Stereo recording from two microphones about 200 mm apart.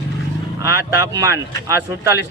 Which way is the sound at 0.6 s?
15° right (ahead or behind).